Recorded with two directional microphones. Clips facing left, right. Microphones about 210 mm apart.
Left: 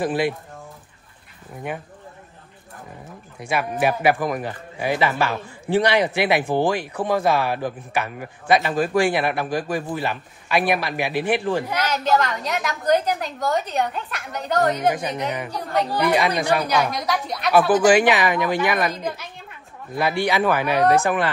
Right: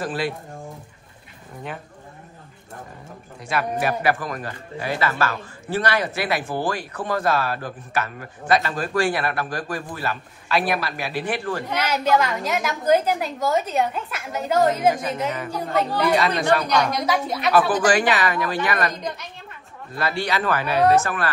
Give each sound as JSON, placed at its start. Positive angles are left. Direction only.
{"t": 0.0, "sound": "speech", "side_deg": 15}
{"t": 3.3, "sound": "speech", "side_deg": 10}
{"t": 11.9, "sound": "a woman's voice", "side_deg": -5}
{"t": 15.0, "sound": "speech", "side_deg": 15}
{"t": 15.5, "sound": "a woman's voice", "side_deg": 0}
{"t": 15.9, "sound": "speech", "side_deg": 15}
{"t": 17.8, "sound": "speech", "side_deg": 10}